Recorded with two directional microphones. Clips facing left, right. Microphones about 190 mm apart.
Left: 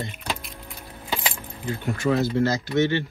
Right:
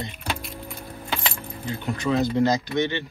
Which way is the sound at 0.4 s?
Centre (ahead or behind).